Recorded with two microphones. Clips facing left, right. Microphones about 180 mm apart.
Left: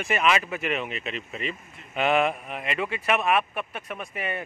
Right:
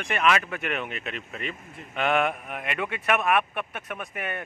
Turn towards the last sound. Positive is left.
turn(degrees=0)  # may be behind; listen again after turning